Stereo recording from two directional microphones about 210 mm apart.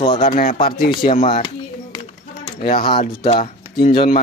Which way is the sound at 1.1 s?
30° left (ahead or behind).